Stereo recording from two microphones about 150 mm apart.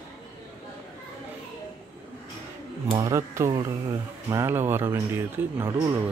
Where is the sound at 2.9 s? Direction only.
20° right (ahead or behind).